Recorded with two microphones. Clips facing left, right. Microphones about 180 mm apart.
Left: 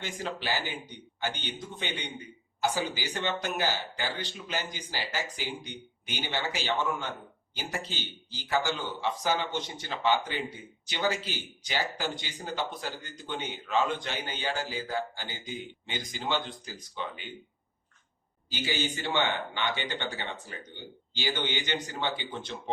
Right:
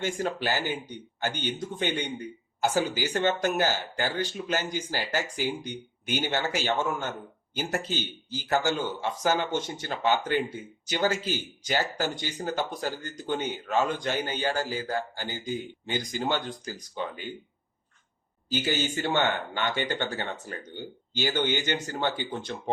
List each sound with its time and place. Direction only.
0.0 s speech: 45° right (ahead or behind)
18.4 s speech: 45° right (ahead or behind)